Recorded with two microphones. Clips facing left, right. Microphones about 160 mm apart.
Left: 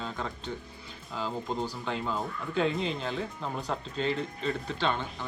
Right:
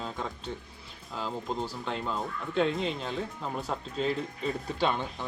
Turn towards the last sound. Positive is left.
turn(degrees=-15)  # may be behind; listen again after turning